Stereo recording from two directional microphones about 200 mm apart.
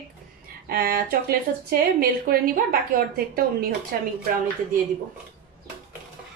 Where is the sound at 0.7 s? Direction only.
50° right (ahead or behind).